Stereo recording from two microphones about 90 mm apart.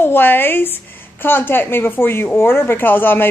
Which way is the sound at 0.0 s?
20° left (ahead or behind).